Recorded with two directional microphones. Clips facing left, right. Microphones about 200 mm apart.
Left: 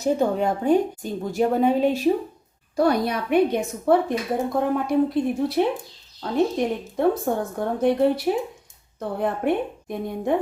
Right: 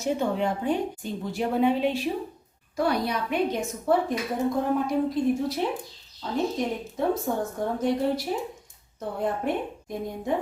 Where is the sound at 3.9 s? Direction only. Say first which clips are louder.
Left 4 dB; 65° left (ahead or behind).